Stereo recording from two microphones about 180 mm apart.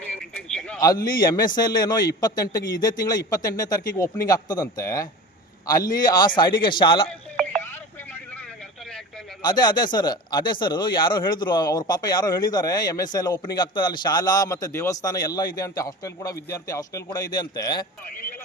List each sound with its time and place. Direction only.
0.0 s a sound: 5° left (ahead or behind)
0.8 s speech: 20° left (ahead or behind)
7.6 s telephone: 10° left (ahead or behind)
9.4 s speech: 25° left (ahead or behind)